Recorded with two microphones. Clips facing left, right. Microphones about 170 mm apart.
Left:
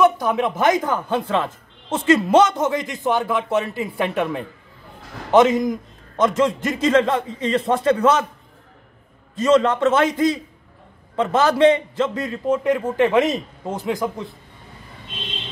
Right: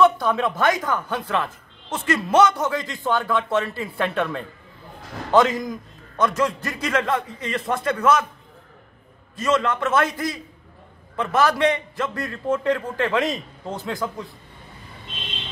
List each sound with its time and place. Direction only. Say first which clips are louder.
0.0 s speech: left 1 dB; 15° left (ahead or behind)
9.4 s speech: left 6 dB; 30° left (ahead or behind)